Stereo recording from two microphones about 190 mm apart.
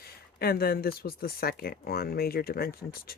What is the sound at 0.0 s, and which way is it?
Speech, 55° left (ahead or behind).